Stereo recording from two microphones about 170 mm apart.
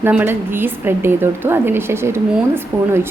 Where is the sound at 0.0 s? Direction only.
10° right (ahead or behind).